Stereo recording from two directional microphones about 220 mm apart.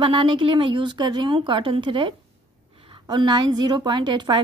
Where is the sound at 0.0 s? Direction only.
25° right (ahead or behind).